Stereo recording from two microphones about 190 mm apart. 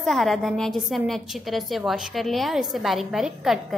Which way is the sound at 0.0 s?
Centre (ahead or behind).